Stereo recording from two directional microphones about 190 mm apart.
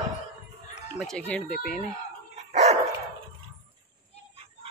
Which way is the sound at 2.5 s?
35° right (ahead or behind).